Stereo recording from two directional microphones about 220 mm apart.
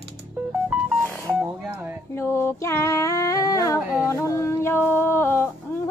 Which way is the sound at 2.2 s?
10° left (ahead or behind).